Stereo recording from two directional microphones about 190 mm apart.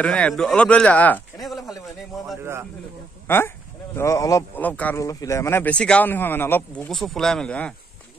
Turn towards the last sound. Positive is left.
turn(degrees=5)  # may be behind; listen again after turning